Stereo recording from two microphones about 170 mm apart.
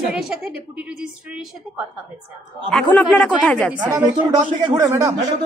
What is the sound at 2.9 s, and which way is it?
Speech, 5° left (ahead or behind).